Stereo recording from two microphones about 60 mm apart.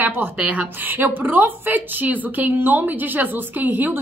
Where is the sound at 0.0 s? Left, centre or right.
Right.